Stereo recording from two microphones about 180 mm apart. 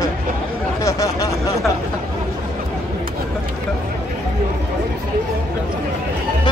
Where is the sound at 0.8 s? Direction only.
15° left (ahead or behind).